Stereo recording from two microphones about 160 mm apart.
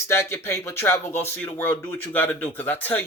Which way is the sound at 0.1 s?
15° left (ahead or behind).